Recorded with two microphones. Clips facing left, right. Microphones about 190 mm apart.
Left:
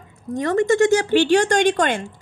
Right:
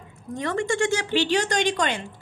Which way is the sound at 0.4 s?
45° left (ahead or behind).